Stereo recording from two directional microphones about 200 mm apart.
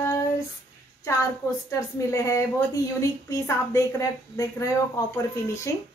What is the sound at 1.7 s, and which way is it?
A woman's voice, 15° left (ahead or behind).